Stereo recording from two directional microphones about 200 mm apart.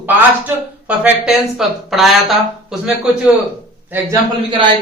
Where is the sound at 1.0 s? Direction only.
5° right (ahead or behind).